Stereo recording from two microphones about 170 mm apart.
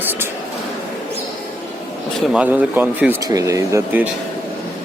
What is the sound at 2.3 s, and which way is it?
Speech, 10° right (ahead or behind).